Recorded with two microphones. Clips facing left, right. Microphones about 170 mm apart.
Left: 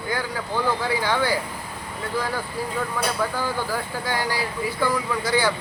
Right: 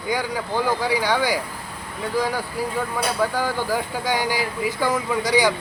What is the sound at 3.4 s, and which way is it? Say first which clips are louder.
Speech: right 3 dB; 15° right (ahead or behind).